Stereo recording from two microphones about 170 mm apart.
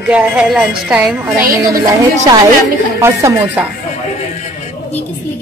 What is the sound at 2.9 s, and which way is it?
Speech, 15° right (ahead or behind).